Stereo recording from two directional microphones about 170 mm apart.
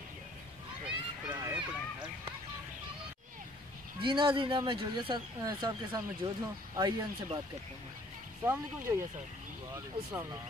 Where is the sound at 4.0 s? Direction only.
30° right (ahead or behind).